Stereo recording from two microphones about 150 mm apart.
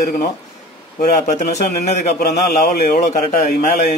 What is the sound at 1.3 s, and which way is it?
Speech, 50° left (ahead or behind).